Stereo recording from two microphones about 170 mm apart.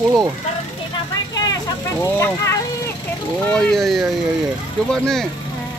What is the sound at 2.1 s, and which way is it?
Speech, 15° left (ahead or behind).